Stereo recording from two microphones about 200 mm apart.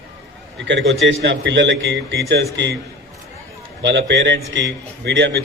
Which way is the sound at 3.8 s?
60° right (ahead or behind).